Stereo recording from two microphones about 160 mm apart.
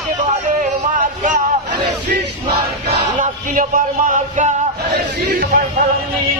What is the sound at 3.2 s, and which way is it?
Music, 60° right (ahead or behind).